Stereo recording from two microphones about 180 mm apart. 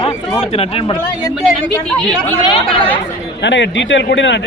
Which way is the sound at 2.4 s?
30° left (ahead or behind).